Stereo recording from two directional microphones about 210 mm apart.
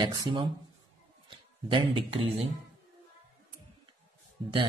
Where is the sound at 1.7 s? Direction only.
25° right (ahead or behind).